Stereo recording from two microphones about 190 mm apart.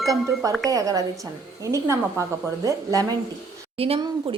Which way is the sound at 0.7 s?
20° right (ahead or behind).